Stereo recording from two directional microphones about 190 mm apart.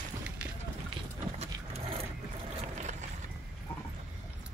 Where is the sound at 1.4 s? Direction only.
35° right (ahead or behind).